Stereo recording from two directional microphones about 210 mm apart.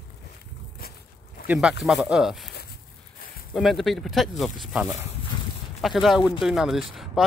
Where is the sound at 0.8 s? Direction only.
45° left (ahead or behind).